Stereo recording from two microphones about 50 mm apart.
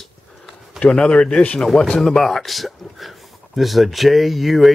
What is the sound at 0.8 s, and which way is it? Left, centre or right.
Speech, centre.